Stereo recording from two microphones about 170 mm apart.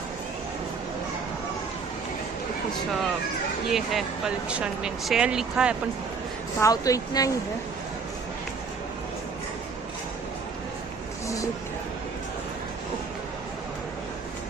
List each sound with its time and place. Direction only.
3.7 s speech: centre (ahead or behind)
6.6 s speech: 20° left (ahead or behind)